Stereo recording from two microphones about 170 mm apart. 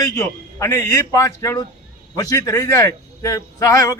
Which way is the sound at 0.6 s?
20° left (ahead or behind).